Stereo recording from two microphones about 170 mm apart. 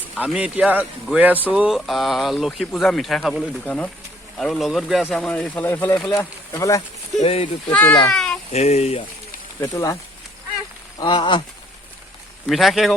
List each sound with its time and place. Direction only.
0.2 s speech: 5° right (ahead or behind); by 6.8 s 20° left (ahead or behind)
7.2 s speech: 35° left (ahead or behind)
7.7 s speech: 10° left (ahead or behind)
8.1 s a sound: 5° left (ahead or behind)
8.5 s speech: 40° left (ahead or behind)
9.6 s speech: 15° left (ahead or behind)
12.5 s speech: centre (ahead or behind)